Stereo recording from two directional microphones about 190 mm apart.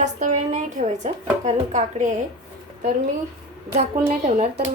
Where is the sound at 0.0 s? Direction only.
40° right (ahead or behind).